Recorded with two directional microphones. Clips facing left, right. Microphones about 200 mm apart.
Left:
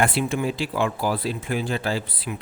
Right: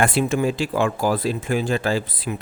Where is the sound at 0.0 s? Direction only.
45° right (ahead or behind).